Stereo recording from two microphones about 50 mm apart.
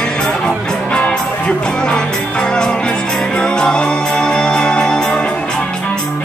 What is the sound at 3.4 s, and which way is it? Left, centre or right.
Music, centre.